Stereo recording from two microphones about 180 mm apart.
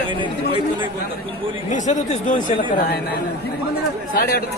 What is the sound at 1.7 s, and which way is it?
Speech, 45° left (ahead or behind).